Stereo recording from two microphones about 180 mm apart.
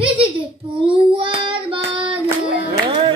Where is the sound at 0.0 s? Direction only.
30° right (ahead or behind).